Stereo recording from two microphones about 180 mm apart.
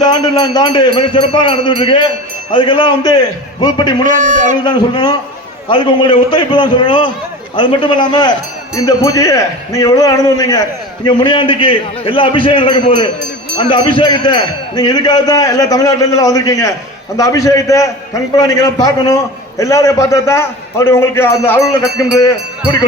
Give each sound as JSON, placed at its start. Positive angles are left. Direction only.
{"t": 0.0, "sound": "speech", "side_deg": 25}
{"t": 4.0, "sound": "a man's voice", "side_deg": -45}
{"t": 4.6, "sound": "a man's voice", "side_deg": 25}